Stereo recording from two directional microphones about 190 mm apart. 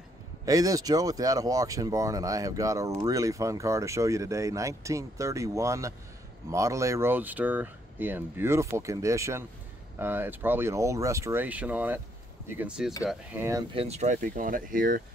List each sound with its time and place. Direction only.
0.5 s speech: 20° right (ahead or behind)
13.7 s speech: 35° right (ahead or behind)